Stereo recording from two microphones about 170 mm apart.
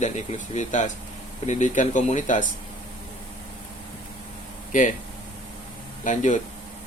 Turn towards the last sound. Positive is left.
turn(degrees=45)  # may be behind; listen again after turning